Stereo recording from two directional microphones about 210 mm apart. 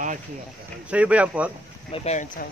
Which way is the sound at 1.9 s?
35° left (ahead or behind).